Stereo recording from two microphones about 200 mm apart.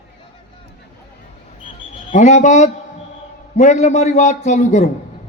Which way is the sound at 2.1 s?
40° left (ahead or behind).